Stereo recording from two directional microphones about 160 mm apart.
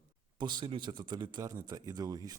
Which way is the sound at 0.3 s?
30° right (ahead or behind).